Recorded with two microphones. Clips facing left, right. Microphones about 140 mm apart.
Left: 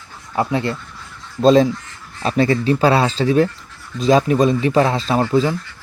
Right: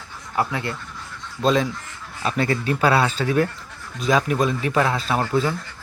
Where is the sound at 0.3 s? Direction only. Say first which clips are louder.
Left 5 dB; 30° left (ahead or behind).